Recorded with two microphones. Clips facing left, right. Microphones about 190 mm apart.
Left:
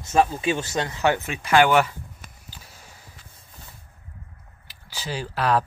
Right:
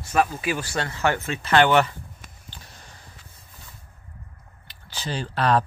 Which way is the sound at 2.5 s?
5° left (ahead or behind).